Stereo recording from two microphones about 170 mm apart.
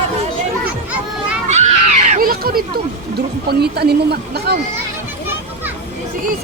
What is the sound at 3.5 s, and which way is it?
A woman's voice, 70° right (ahead or behind).